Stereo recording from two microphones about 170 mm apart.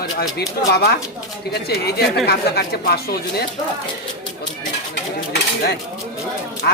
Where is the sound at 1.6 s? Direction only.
70° left (ahead or behind).